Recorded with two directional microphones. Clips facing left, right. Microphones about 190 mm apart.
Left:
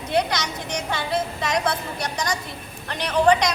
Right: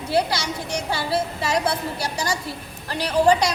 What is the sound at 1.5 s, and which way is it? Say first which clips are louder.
A woman's voice: right 2 dB; 30° right (ahead or behind).